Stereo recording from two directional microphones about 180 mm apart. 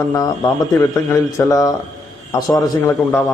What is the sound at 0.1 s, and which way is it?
A man's voice, 20° left (ahead or behind).